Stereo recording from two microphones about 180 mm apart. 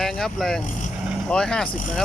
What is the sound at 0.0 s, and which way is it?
Speech, centre (ahead or behind).